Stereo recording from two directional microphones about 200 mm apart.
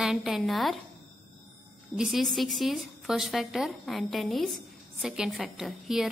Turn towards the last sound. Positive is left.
turn(degrees=0)  # may be behind; listen again after turning